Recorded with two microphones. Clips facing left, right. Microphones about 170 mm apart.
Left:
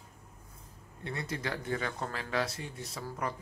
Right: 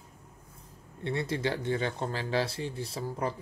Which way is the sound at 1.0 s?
30° right (ahead or behind).